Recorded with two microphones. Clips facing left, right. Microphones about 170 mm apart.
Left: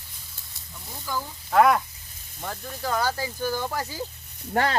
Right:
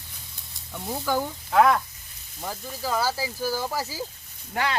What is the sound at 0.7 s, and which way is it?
Speech, 70° right (ahead or behind).